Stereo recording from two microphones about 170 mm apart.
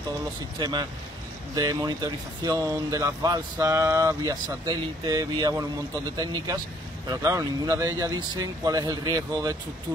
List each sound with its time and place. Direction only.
0.6 s speech: 25° right (ahead or behind)